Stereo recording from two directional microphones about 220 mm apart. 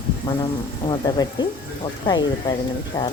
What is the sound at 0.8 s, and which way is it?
Speech, 20° left (ahead or behind).